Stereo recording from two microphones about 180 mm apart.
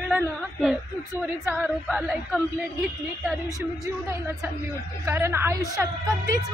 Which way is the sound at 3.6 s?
15° right (ahead or behind).